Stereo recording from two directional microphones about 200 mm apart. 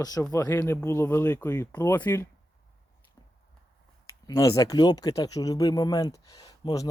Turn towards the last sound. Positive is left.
turn(degrees=20)  # may be behind; listen again after turning